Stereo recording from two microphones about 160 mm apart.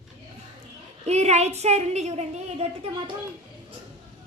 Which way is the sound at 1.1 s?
45° right (ahead or behind).